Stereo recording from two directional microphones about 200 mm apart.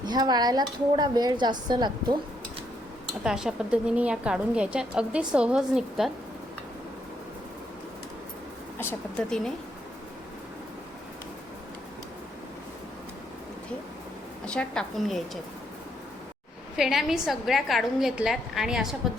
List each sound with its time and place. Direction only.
0.0 s a woman's voice: 20° right (ahead or behind)
3.2 s a woman's voice: 5° right (ahead or behind)
8.8 s speech: 10° left (ahead or behind)
14.4 s a woman's voice: 5° left (ahead or behind)
16.7 s a woman's voice: centre (ahead or behind)